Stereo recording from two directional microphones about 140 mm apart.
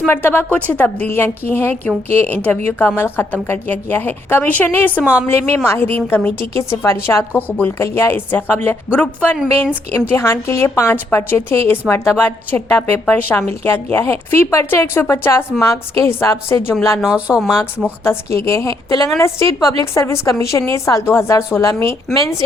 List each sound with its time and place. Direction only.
0.0 s a woman's voice: 15° left (ahead or behind)
17.0 s speech: 10° right (ahead or behind)
17.8 s a woman's voice: 20° left (ahead or behind)